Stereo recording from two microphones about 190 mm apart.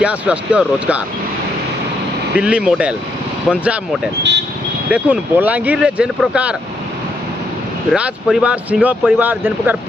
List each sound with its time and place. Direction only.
0.0 s speech: 10° right (ahead or behind)
2.3 s speech: 5° right (ahead or behind)
7.9 s speech: 5° right (ahead or behind)